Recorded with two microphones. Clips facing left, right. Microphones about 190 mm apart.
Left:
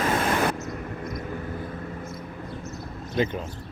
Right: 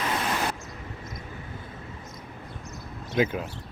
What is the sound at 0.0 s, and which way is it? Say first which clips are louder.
Vehicle: left 5 dB; 50° left (ahead or behind).